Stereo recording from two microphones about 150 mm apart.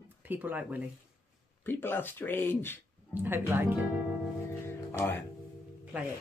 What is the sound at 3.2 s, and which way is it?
Speech, 15° right (ahead or behind).